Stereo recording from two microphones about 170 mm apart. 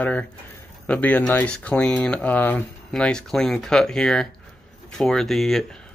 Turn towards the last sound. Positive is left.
turn(degrees=0)  # may be behind; listen again after turning